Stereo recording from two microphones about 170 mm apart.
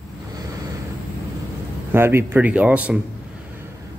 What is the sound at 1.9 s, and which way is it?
Speech, 15° right (ahead or behind).